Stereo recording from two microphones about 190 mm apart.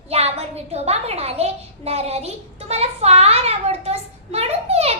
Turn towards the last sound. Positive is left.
turn(degrees=-35)  # may be behind; listen again after turning